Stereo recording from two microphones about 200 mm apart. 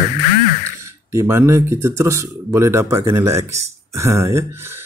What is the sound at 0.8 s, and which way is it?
Speech, 15° right (ahead or behind).